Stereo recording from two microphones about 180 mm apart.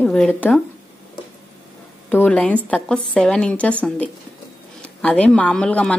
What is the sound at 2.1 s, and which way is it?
Speech, 5° left (ahead or behind).